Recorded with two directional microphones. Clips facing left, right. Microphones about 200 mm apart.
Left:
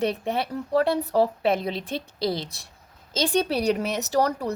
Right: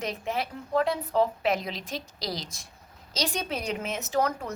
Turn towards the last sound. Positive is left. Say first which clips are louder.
# left 4 dB
turn(degrees=35)  # may be behind; listen again after turning